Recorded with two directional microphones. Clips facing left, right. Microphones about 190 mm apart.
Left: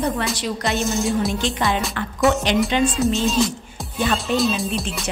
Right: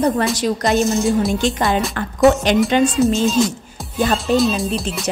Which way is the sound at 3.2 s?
Centre (ahead or behind).